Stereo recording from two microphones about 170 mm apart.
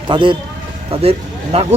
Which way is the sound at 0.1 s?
30° right (ahead or behind).